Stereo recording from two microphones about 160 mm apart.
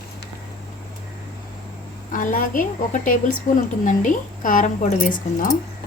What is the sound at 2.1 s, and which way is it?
A woman's voice, 55° left (ahead or behind).